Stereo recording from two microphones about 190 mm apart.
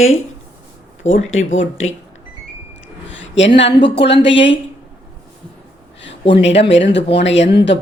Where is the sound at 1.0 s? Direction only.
90° left.